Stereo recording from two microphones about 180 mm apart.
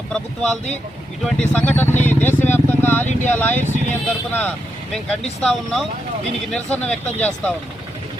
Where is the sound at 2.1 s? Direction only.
10° left (ahead or behind).